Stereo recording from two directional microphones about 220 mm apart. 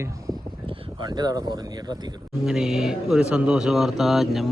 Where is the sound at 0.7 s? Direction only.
20° right (ahead or behind).